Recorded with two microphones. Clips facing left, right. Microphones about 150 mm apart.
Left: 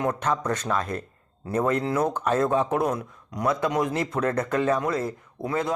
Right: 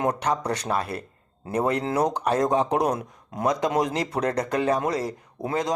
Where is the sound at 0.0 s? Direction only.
35° right (ahead or behind).